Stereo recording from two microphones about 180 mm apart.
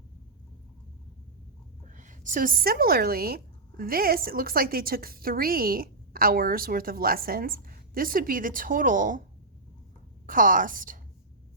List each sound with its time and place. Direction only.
1.9 s a woman's voice: 45° right (ahead or behind)
10.2 s a woman's voice: 50° right (ahead or behind)